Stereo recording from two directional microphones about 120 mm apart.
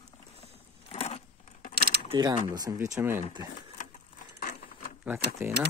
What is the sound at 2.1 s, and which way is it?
Speech, 40° right (ahead or behind).